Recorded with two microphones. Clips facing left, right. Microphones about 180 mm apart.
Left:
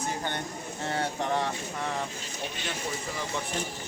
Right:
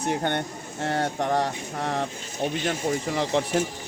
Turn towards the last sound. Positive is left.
turn(degrees=-80)